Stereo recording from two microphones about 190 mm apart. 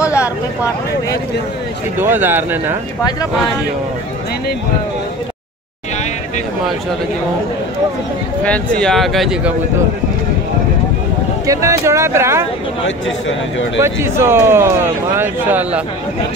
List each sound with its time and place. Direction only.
2.0 s speech: 10° right (ahead or behind)
3.0 s speech: 20° left (ahead or behind)
8.5 s speech: 5° left (ahead or behind)
11.4 s speech: 15° right (ahead or behind)
12.8 s speech: 80° left
13.7 s speech: 15° right (ahead or behind)